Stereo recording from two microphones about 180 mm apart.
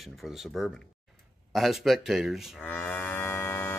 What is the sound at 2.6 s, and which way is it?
Livestock, 10° left (ahead or behind).